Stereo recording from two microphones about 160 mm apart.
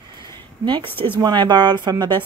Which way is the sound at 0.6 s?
35° right (ahead or behind).